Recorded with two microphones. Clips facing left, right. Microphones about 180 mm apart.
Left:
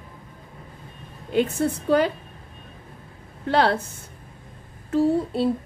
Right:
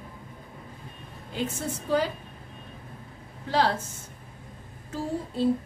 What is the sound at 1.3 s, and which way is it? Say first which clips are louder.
Speech: left 9 dB; 60° left (ahead or behind).